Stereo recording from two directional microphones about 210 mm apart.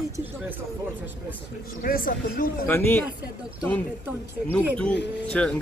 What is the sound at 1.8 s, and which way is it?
Speech, 40° left (ahead or behind).